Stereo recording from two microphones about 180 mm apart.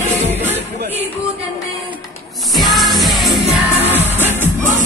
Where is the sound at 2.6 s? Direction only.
Centre (ahead or behind).